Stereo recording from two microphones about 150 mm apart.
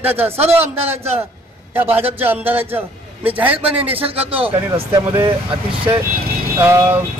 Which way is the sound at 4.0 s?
40° right (ahead or behind).